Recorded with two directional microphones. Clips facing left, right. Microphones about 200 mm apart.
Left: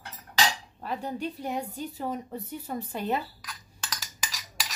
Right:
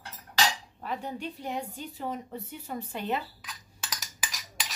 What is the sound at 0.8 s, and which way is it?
A woman's voice, 40° left (ahead or behind).